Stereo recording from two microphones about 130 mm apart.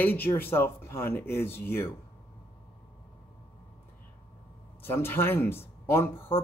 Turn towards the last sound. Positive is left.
turn(degrees=20)  # may be behind; listen again after turning